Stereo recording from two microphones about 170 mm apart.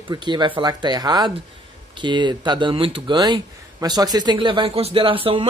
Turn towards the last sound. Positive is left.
turn(degrees=-30)  # may be behind; listen again after turning